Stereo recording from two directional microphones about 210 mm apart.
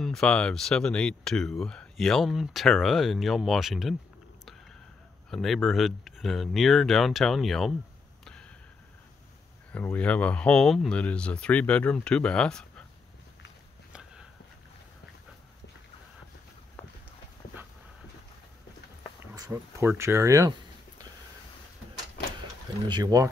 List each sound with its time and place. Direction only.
0.0 s speech: centre (ahead or behind)
5.3 s speech: centre (ahead or behind)
9.7 s speech: 5° left (ahead or behind)
19.3 s speech: 15° right (ahead or behind)
22.8 s speech: 20° right (ahead or behind)